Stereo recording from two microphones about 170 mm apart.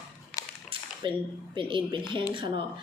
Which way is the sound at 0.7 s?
30° right (ahead or behind).